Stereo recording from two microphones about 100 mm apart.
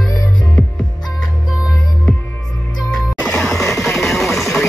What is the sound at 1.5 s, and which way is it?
Music, 40° left (ahead or behind).